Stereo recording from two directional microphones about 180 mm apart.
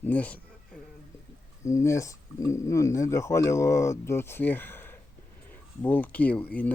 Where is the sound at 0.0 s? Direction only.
10° left (ahead or behind).